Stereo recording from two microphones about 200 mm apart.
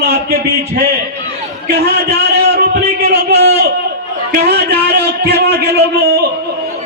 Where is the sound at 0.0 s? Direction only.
50° right (ahead or behind).